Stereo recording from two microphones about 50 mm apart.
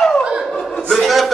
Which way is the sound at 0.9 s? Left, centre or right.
Centre.